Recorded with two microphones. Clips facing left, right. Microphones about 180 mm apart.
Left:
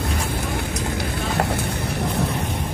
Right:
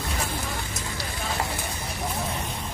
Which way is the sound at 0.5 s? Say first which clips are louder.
Left 8 dB; 60° left (ahead or behind).